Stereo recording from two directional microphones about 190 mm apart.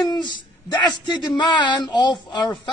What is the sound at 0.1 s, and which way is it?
Speech, 25° left (ahead or behind).